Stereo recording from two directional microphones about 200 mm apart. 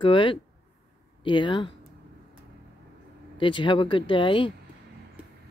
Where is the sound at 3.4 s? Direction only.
25° left (ahead or behind).